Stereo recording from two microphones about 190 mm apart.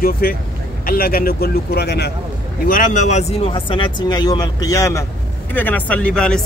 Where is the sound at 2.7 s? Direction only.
40° left (ahead or behind); by 6.4 s 5° left (ahead or behind).